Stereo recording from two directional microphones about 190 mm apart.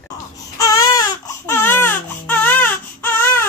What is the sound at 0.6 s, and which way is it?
Baby cry, 20° left (ahead or behind).